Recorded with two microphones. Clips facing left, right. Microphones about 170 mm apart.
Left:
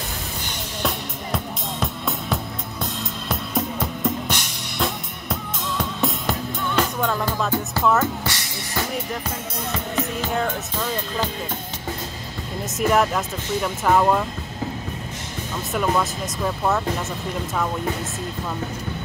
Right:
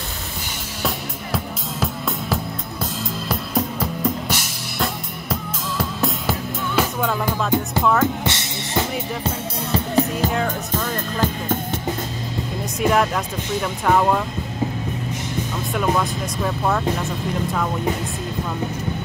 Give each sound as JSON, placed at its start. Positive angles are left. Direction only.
{"t": 0.8, "sound": "music", "side_deg": 0}
{"t": 7.8, "sound": "speech", "side_deg": 0}
{"t": 8.2, "sound": "speech", "side_deg": -25}
{"t": 9.2, "sound": "music", "side_deg": -35}
{"t": 12.7, "sound": "speech", "side_deg": 0}
{"t": 15.7, "sound": "speech", "side_deg": 0}